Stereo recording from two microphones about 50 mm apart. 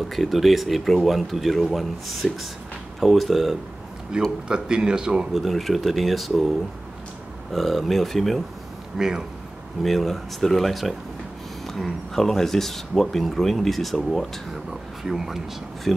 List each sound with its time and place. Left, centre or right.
0.1 s speech: centre
4.1 s speech: centre
5.3 s speech: centre
7.5 s speech: centre
8.9 s speech: centre
9.8 s speech: centre
15.0 s speech: centre